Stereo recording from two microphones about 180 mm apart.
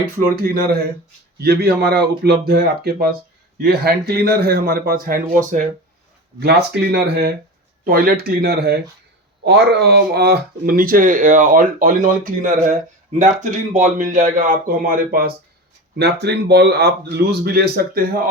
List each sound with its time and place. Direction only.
0.0 s speech: 55° right (ahead or behind)
1.4 s a man's voice: 65° right (ahead or behind)
6.4 s a man's voice: 65° right (ahead or behind)
16.2 s a man's voice: 65° right (ahead or behind)